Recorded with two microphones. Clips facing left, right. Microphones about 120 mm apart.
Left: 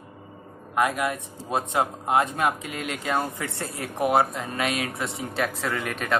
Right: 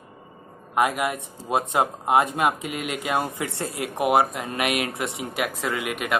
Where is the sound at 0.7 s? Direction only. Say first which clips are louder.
Right 1 dB; 10° right (ahead or behind).